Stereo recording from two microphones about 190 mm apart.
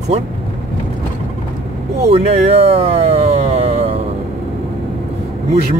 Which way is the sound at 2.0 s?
30° right (ahead or behind).